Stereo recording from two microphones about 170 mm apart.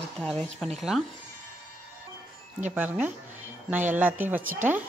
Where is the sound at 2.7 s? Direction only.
10° right (ahead or behind).